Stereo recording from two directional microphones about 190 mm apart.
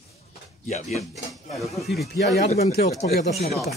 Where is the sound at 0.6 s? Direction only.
35° left (ahead or behind).